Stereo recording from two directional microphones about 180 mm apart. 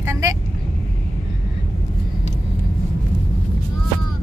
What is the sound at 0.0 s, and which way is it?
Vehicle, 15° right (ahead or behind).